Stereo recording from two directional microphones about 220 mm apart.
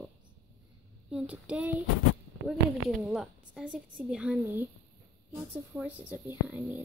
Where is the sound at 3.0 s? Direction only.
Centre (ahead or behind).